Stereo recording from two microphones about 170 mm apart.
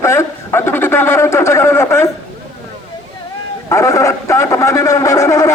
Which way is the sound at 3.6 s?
20° left (ahead or behind).